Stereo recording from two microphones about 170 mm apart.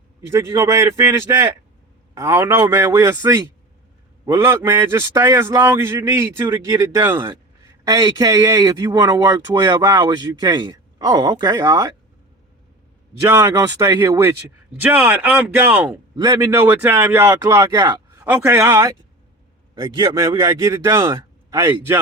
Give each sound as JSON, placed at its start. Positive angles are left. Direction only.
{"t": 0.3, "sound": "a man's voice", "side_deg": -15}
{"t": 4.3, "sound": "a man's voice", "side_deg": -15}
{"t": 13.1, "sound": "a man's voice", "side_deg": -15}
{"t": 16.1, "sound": "a man's voice", "side_deg": -25}